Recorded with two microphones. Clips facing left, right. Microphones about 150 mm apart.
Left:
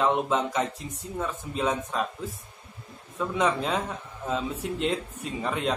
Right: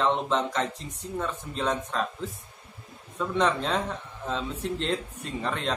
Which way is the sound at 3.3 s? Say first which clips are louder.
Even; 5° left (ahead or behind).